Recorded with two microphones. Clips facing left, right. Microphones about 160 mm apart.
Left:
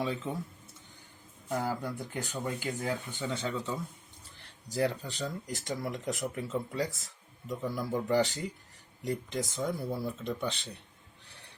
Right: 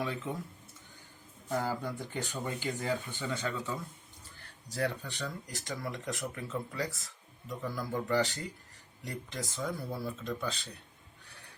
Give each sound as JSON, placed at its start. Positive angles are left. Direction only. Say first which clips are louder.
{"t": 1.5, "sound": "speech", "louder": "left 1 dB", "side_deg": 10}